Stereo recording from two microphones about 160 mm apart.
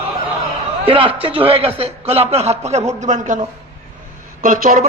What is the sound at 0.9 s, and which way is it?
A man's voice, 35° right (ahead or behind).